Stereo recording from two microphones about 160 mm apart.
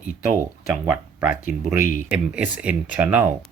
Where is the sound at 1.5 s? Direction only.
50° left (ahead or behind).